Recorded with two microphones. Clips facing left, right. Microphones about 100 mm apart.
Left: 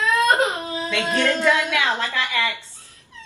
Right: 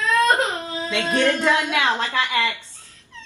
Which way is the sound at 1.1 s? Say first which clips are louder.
Right 1 dB; 20° right (ahead or behind).